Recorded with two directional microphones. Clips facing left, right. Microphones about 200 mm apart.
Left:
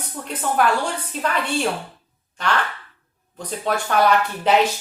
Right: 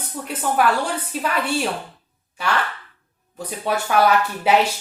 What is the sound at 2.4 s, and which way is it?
A woman's voice, 10° right (ahead or behind).